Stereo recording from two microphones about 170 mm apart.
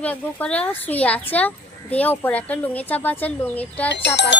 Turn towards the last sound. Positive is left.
turn(degrees=90)